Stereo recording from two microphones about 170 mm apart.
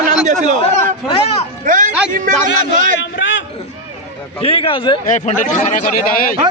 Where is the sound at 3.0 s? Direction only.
90° left.